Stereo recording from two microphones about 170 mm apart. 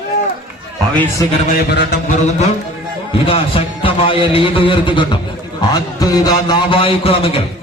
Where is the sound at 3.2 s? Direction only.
30° left (ahead or behind).